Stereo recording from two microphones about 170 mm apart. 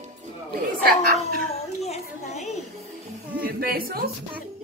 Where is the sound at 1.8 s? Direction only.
40° left (ahead or behind).